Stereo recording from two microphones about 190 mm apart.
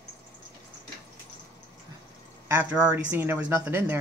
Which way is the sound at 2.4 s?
10° right (ahead or behind).